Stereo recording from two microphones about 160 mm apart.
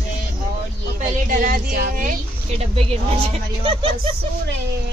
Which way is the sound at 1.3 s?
65° right (ahead or behind).